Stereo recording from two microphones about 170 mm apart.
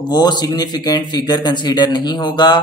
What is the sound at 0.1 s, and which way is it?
A man's voice, 25° left (ahead or behind).